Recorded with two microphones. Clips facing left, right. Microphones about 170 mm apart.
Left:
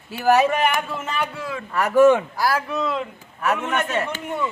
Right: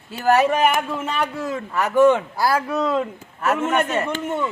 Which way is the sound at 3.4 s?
5° right (ahead or behind).